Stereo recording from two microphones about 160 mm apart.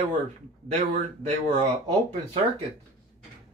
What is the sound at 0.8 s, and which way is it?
Speech, 50° right (ahead or behind).